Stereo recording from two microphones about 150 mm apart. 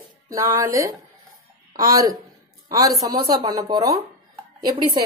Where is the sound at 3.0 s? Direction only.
25° right (ahead or behind).